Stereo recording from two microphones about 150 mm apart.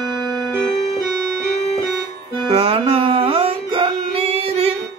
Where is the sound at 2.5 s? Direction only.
40° right (ahead or behind).